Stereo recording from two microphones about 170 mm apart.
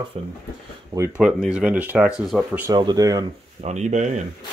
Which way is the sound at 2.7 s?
25° right (ahead or behind).